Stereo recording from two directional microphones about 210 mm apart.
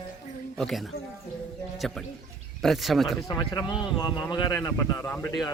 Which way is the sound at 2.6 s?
Centre (ahead or behind).